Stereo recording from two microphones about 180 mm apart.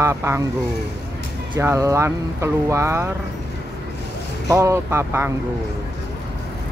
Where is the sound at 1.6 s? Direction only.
15° right (ahead or behind).